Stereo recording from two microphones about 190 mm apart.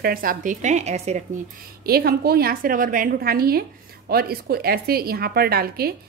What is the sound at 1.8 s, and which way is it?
A woman's voice, 55° right (ahead or behind).